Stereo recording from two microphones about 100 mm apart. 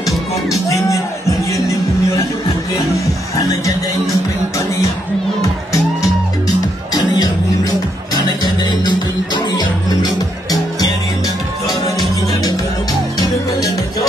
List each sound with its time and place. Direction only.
0.5 s speech: 35° left (ahead or behind)
6.9 s music: 40° left (ahead or behind)
13.2 s music: 35° left (ahead or behind)